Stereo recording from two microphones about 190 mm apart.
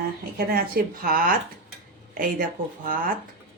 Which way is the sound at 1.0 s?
50° right (ahead or behind).